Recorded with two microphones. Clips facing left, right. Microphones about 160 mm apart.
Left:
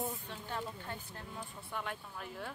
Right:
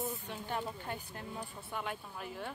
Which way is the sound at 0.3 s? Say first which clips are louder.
Right 3 dB; 15° right (ahead or behind).